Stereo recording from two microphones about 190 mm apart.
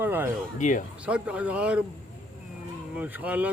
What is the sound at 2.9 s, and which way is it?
Speech, 10° right (ahead or behind).